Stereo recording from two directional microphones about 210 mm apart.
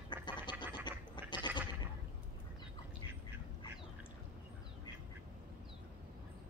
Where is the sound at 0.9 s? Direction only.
20° left (ahead or behind).